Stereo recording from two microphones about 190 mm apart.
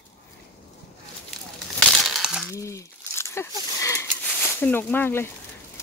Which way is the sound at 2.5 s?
15° left (ahead or behind).